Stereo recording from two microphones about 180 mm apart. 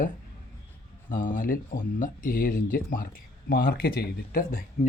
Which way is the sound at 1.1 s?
50° left (ahead or behind).